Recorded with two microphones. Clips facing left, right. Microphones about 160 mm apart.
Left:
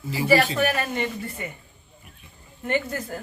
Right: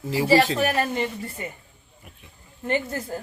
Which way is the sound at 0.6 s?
30° right (ahead or behind).